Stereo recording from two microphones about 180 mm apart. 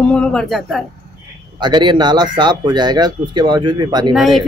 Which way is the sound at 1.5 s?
25° right (ahead or behind).